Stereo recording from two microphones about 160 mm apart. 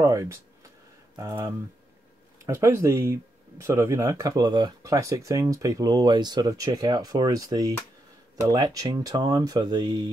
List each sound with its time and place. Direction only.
0.0 s speech: 20° right (ahead or behind)